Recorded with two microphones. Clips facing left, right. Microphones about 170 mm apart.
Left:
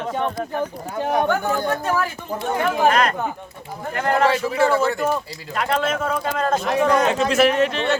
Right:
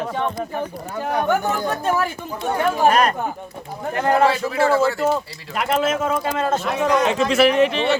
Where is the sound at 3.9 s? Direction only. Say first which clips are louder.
Right 2 dB; 15° right (ahead or behind).